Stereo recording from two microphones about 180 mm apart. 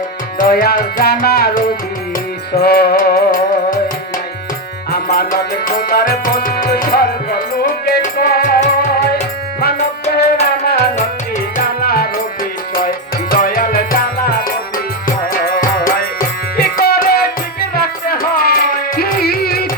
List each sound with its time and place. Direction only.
0.3 s music: 55° left (ahead or behind)
5.1 s tabla: 50° left (ahead or behind)
7.9 s music: 55° left (ahead or behind)
10.1 s music: 60° left (ahead or behind)
11.5 s music: 60° left (ahead or behind)
13.3 s music: 55° left (ahead or behind)